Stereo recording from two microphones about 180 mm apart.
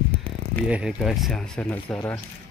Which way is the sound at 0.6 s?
5° right (ahead or behind).